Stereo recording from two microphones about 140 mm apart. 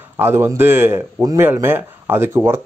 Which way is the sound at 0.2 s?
15° right (ahead or behind).